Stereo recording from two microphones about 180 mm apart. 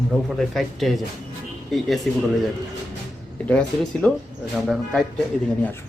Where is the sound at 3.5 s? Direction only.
5° left (ahead or behind).